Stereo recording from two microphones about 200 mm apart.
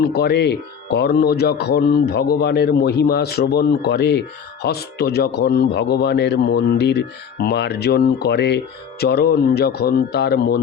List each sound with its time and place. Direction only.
0.0 s a man's voice: 55° left (ahead or behind)